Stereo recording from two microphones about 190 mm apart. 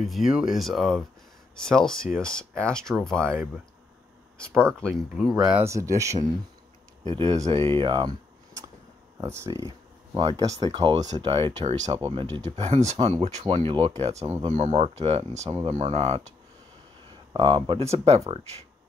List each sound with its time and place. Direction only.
0.0 s speech: centre (ahead or behind)
4.4 s speech: 5° left (ahead or behind)
5.5 s speech: 15° right (ahead or behind)
7.1 s speech: 35° right (ahead or behind)
14.2 s speech: 20° right (ahead or behind)
14.5 s speech: 35° right (ahead or behind)
17.3 s speech: 25° right (ahead or behind)